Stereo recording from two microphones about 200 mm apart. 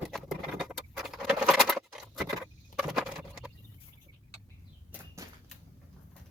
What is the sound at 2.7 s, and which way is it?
Patter, 5° right (ahead or behind).